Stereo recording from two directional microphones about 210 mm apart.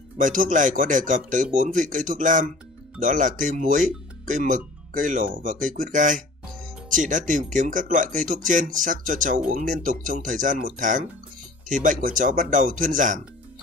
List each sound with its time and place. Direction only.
0.2 s speech: 40° right (ahead or behind)